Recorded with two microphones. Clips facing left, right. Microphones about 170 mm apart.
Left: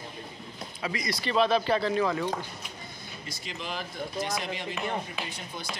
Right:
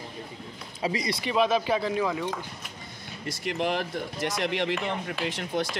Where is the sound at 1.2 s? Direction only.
15° right (ahead or behind).